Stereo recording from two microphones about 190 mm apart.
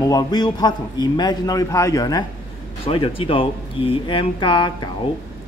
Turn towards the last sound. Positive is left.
turn(degrees=25)  # may be behind; listen again after turning